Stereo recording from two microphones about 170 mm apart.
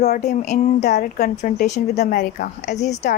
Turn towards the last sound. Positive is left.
turn(degrees=45)  # may be behind; listen again after turning